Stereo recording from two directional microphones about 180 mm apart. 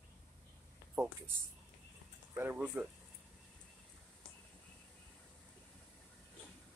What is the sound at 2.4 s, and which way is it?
Speech, 10° right (ahead or behind).